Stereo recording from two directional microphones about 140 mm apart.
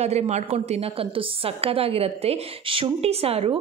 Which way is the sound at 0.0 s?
50° right (ahead or behind).